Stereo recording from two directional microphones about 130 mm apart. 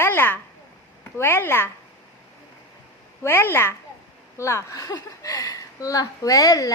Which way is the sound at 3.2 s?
20° left (ahead or behind).